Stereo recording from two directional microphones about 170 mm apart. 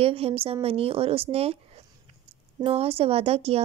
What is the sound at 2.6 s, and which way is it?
Speech, 35° right (ahead or behind).